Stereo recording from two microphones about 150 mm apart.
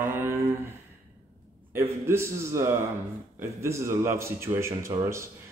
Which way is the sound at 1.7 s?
15° right (ahead or behind).